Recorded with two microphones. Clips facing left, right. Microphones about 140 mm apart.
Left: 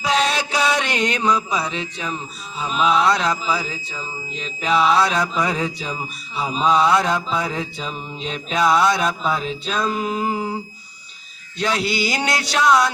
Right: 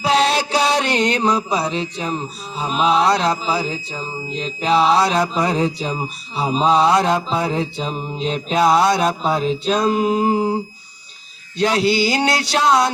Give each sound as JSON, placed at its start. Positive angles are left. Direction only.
{"t": 0.0, "sound": "mantra", "side_deg": -30}